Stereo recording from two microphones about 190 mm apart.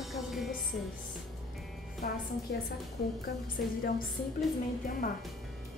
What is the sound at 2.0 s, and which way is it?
Speech, 50° left (ahead or behind).